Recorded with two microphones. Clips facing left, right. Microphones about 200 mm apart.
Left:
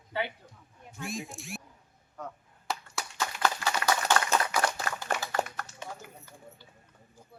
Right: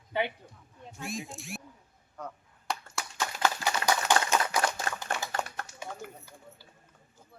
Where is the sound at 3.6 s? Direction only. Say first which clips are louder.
Even; 15° right (ahead or behind).